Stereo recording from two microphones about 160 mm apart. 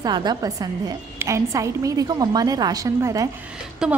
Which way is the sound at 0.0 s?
25° right (ahead or behind).